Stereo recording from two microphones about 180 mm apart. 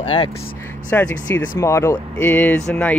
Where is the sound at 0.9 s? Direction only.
10° left (ahead or behind).